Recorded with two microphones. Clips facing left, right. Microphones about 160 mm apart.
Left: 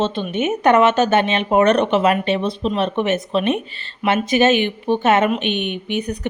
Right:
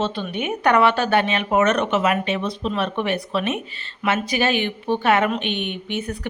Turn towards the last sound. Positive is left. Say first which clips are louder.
# left 4 dB
turn(degrees=15)  # may be behind; listen again after turning